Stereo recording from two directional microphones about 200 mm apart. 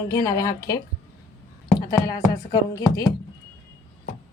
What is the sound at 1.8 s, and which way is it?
A woman's voice, 20° left (ahead or behind).